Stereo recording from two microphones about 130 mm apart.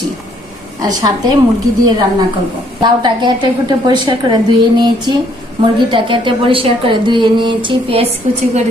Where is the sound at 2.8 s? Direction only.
35° right (ahead or behind).